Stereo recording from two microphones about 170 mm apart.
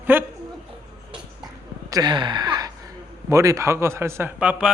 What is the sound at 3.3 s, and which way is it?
A man's voice, 20° right (ahead or behind).